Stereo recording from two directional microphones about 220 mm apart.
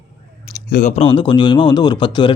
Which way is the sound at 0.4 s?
45° left (ahead or behind).